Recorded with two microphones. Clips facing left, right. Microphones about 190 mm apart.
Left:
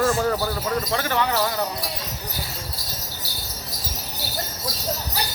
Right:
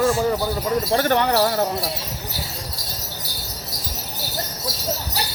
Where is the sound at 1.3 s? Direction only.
40° right (ahead or behind).